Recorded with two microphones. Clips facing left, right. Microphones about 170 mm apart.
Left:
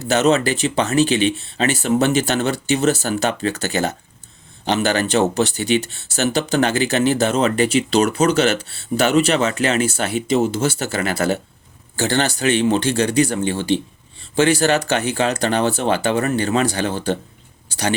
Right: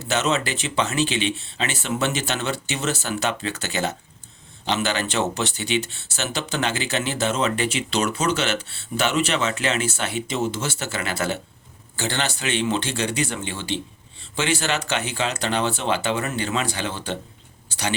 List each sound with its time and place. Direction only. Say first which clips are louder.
0.1 s speech: left 7 dB; 35° left (ahead or behind)